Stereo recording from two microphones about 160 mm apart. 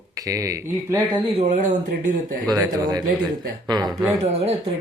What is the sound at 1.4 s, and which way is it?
Speech, 50° right (ahead or behind).